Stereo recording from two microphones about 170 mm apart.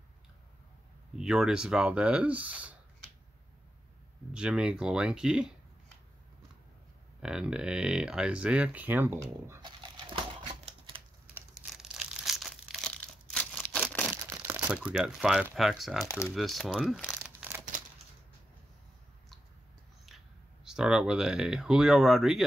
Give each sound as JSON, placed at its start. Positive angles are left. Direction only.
{"t": 1.1, "sound": "speech", "side_deg": -5}
{"t": 4.3, "sound": "speech", "side_deg": -5}
{"t": 7.2, "sound": "speech", "side_deg": -5}
{"t": 9.6, "sound": "a sound", "side_deg": -25}
{"t": 11.5, "sound": "crumpling", "side_deg": 0}
{"t": 14.3, "sound": "speech", "side_deg": -15}
{"t": 16.1, "sound": "speech", "side_deg": 15}
{"t": 16.3, "sound": "speech", "side_deg": 0}
{"t": 20.6, "sound": "speech", "side_deg": -5}